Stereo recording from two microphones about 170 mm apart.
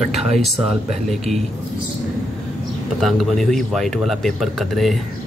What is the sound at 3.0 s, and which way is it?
Speech, centre (ahead or behind).